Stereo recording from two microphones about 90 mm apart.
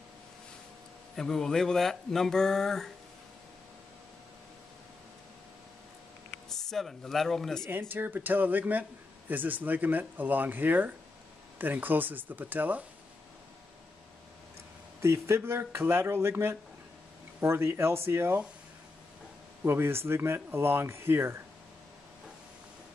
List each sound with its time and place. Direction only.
1.1 s speech: 5° left (ahead or behind)
6.5 s speech: 5° left (ahead or behind)
7.9 s speech: 20° right (ahead or behind)
15.0 s speech: 30° right (ahead or behind)
19.6 s speech: 25° right (ahead or behind)